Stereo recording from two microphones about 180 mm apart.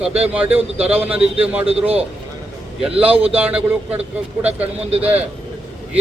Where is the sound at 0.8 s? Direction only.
10° right (ahead or behind).